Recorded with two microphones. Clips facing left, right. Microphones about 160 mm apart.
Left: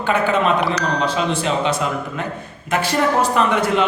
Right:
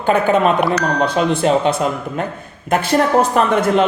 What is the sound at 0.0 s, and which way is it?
Speech, 45° right (ahead or behind).